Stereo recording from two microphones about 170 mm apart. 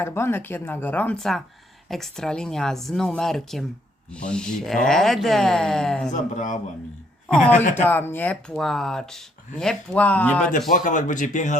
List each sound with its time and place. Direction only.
0.0 s speech: 15° left (ahead or behind)
6.1 s speech: 50° left (ahead or behind)
7.8 s speech: 10° left (ahead or behind)
10.7 s speech: 50° left (ahead or behind)